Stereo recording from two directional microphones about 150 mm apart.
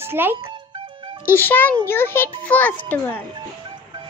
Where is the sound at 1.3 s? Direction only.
15° left (ahead or behind).